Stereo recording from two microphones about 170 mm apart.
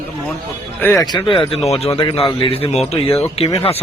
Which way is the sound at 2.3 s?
30° left (ahead or behind).